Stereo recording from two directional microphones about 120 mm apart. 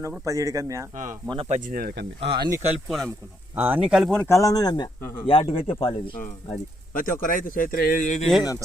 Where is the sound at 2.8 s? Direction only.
Centre (ahead or behind).